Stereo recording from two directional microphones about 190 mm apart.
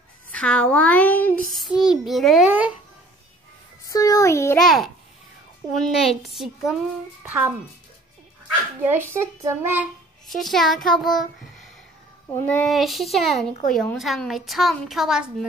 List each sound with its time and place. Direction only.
0.3 s speech: 5° left (ahead or behind)
1.5 s a woman's voice: centre (ahead or behind)
3.9 s a sound: 20° left (ahead or behind)
4.6 s a woman's voice: centre (ahead or behind)
8.8 s a child's voice: 10° right (ahead or behind)
10.2 s a woman's voice: centre (ahead or behind)
12.4 s a woman's voice: 5° left (ahead or behind)